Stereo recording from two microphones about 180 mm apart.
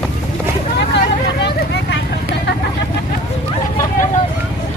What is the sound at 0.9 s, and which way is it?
Vehicle, 75° left (ahead or behind).